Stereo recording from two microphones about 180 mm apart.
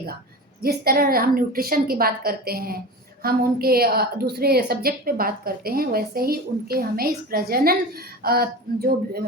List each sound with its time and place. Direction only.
0.6 s a woman's voice: 55° right (ahead or behind)